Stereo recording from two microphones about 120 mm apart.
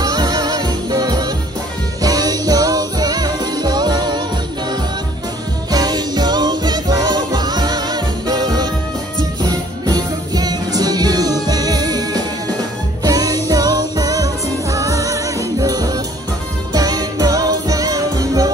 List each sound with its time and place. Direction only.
0.0 s music: 35° right (ahead or behind)
5.7 s music: 35° right (ahead or behind)